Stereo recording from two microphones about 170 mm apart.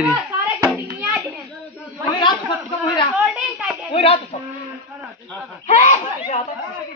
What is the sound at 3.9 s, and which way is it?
Speech, 30° left (ahead or behind).